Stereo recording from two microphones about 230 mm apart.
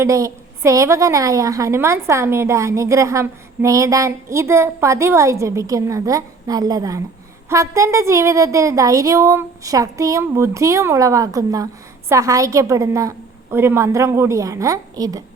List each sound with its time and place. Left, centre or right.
0.0 s a woman's voice: centre